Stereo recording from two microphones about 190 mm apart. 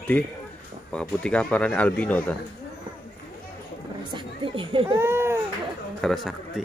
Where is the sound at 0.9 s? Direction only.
5° left (ahead or behind).